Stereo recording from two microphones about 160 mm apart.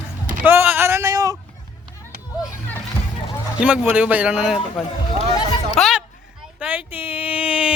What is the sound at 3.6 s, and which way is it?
Speech, 10° right (ahead or behind).